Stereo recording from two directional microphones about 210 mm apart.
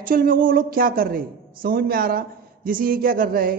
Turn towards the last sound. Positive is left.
turn(degrees=-45)  # may be behind; listen again after turning